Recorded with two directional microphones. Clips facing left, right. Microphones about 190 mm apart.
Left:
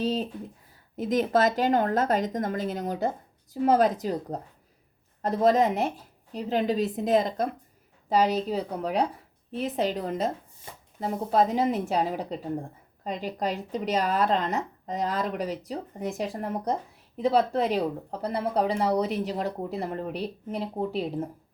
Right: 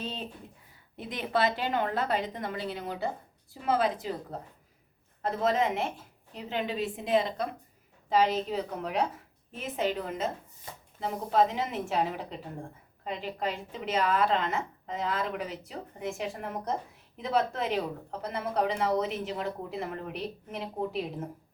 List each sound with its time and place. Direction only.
0.0 s a woman's voice: 40° left (ahead or behind)